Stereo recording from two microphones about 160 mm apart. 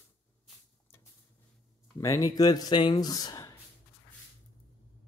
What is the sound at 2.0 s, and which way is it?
Speech, 20° left (ahead or behind).